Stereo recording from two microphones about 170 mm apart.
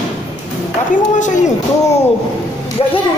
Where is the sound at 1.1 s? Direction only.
45° left (ahead or behind).